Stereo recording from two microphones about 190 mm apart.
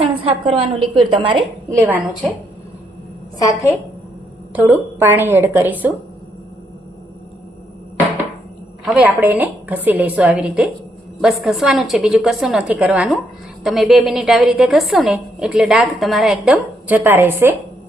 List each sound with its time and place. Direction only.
0.0 s a sound: 30° right (ahead or behind)
0.9 s a woman's voice: 25° right (ahead or behind)
1.7 s a woman's voice: 10° right (ahead or behind)
3.3 s a woman's voice: 15° left (ahead or behind)
4.5 s a woman's voice: 10° right (ahead or behind)
8.9 s a woman's voice: 10° right (ahead or behind)